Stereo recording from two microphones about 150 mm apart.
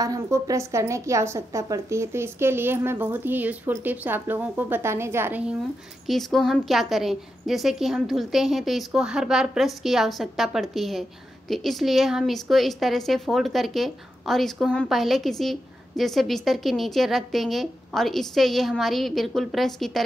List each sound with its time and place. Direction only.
0.0 s a woman's voice: 25° right (ahead or behind)
6.0 s a woman's voice: centre (ahead or behind)